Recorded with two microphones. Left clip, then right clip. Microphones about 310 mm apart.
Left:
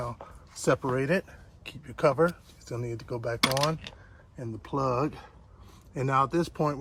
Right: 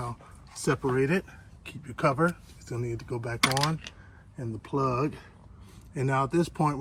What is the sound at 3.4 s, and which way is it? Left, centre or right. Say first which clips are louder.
Mechanisms: right 1 dB; left.